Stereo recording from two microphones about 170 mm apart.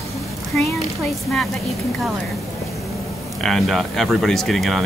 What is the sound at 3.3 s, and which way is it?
Speech, centre (ahead or behind).